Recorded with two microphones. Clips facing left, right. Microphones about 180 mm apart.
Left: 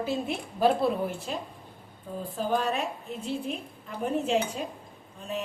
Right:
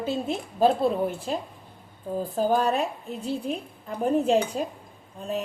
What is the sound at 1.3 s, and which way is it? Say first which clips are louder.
A woman's voice: right 5 dB; 35° right (ahead or behind).